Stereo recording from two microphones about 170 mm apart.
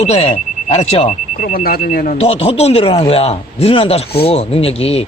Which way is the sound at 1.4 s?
55° left (ahead or behind).